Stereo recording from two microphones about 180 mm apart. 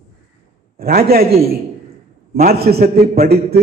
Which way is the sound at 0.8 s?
55° right (ahead or behind).